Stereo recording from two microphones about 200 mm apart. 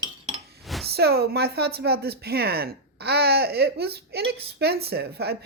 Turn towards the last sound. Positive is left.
turn(degrees=-55)  # may be behind; listen again after turning